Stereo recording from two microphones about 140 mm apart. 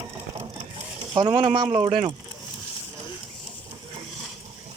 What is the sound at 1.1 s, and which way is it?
Speech, 35° right (ahead or behind).